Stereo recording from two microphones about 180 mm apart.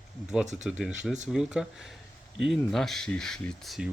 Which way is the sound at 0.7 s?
5° right (ahead or behind).